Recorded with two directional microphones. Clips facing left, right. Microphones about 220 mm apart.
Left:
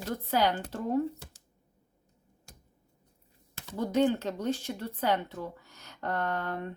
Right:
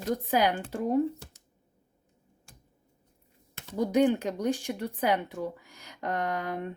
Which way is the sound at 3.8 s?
15° right (ahead or behind).